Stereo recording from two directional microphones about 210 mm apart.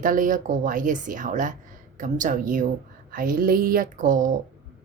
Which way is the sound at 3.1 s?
45° right (ahead or behind).